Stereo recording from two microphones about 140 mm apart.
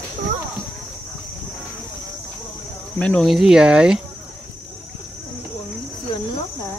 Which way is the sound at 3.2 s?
5° right (ahead or behind).